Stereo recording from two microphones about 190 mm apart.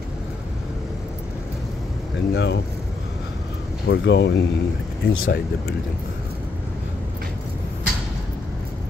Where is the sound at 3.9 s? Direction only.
65° left (ahead or behind).